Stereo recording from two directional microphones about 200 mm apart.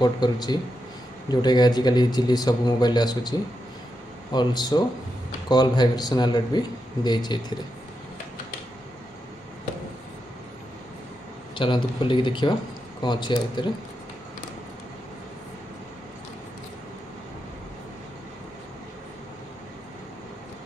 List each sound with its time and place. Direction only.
0.0 s speech: 20° left (ahead or behind)
11.5 s speech: 25° left (ahead or behind)